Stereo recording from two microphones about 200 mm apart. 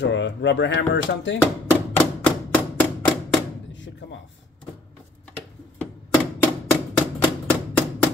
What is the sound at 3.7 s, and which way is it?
Door, 65° left (ahead or behind).